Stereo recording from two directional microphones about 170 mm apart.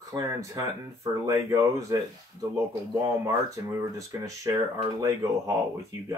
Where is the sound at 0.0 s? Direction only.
20° right (ahead or behind).